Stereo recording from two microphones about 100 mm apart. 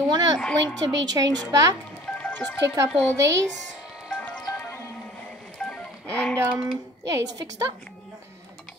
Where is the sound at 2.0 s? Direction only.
10° left (ahead or behind).